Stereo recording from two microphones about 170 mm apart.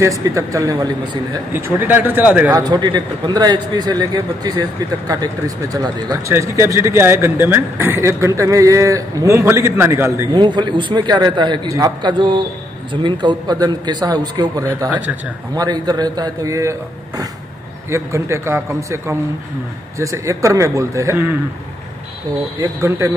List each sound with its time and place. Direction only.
0.0 s a man's voice: 20° right (ahead or behind)
2.6 s a man's voice: 25° right (ahead or behind)
10.4 s a man's voice: 25° right (ahead or behind)
17.8 s speech: 15° right (ahead or behind)
22.6 s speech: 15° right (ahead or behind)